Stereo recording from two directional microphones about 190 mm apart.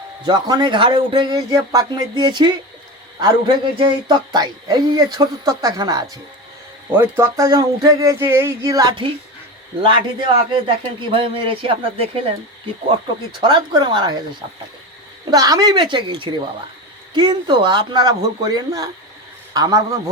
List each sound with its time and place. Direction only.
0.3 s a woman's voice: 20° right (ahead or behind)
13.4 s a woman's voice: 25° right (ahead or behind)
15.3 s a woman's voice: 20° right (ahead or behind)